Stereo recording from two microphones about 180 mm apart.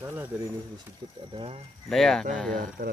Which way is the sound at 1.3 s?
30° right (ahead or behind).